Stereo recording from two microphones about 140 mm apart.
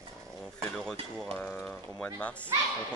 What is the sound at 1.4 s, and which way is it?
Speech, 10° left (ahead or behind).